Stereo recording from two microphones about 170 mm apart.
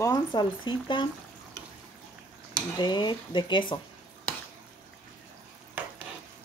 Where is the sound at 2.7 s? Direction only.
25° left (ahead or behind).